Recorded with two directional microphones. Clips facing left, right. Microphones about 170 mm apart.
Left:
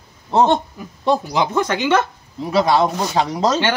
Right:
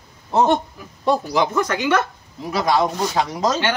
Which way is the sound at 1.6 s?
25° left (ahead or behind).